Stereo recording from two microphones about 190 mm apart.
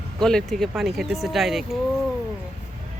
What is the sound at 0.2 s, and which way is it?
Speech, 5° left (ahead or behind).